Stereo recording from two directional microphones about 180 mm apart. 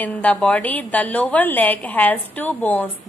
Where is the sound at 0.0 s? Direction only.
10° left (ahead or behind).